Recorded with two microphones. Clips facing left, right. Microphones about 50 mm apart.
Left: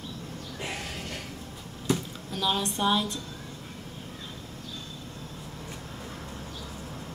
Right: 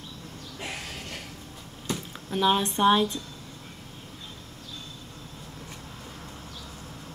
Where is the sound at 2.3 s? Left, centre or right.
Right.